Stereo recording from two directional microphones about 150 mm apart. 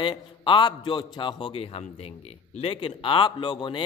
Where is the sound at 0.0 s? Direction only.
35° left (ahead or behind).